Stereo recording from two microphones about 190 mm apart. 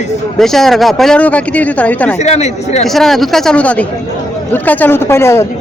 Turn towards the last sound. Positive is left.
turn(degrees=15)  # may be behind; listen again after turning